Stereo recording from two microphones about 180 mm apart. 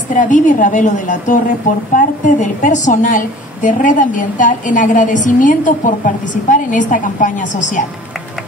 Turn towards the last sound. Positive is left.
turn(degrees=45)  # may be behind; listen again after turning